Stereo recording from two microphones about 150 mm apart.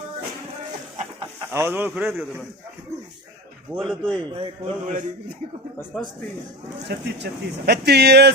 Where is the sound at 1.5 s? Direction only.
15° right (ahead or behind).